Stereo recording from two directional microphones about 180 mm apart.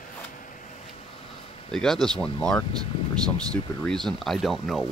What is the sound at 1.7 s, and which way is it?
Speech, centre (ahead or behind).